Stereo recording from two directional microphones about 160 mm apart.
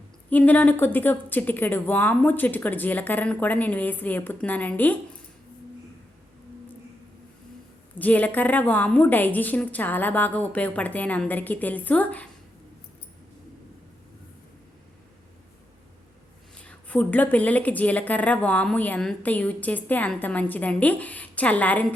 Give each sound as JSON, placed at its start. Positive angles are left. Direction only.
{"t": 0.3, "sound": "speech", "side_deg": 10}
{"t": 7.9, "sound": "speech", "side_deg": 10}
{"t": 16.6, "sound": "speech", "side_deg": 5}